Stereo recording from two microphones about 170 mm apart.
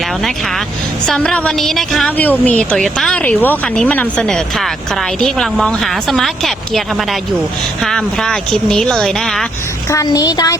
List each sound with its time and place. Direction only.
1.0 s a woman's voice: 5° left (ahead or behind)
7.9 s a woman's voice: 5° left (ahead or behind)
9.9 s a woman's voice: 20° left (ahead or behind)